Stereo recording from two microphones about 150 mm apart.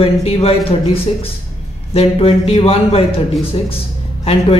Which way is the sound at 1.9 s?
40° left (ahead or behind).